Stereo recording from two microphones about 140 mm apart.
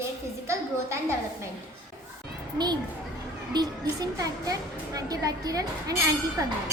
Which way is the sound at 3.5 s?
30° right (ahead or behind).